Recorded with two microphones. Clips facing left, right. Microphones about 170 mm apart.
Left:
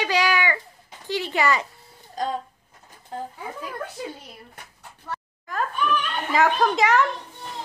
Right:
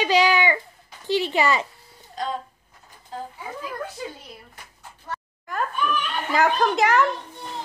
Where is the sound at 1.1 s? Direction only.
20° right (ahead or behind).